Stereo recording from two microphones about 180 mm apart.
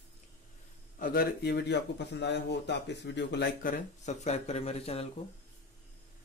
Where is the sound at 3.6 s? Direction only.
45° left (ahead or behind).